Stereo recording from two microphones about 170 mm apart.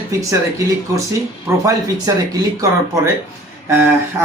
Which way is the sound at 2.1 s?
20° right (ahead or behind).